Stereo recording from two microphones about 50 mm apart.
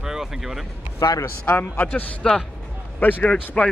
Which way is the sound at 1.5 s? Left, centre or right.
Left.